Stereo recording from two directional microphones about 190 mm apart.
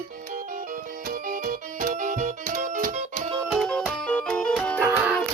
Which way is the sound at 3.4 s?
Centre (ahead or behind).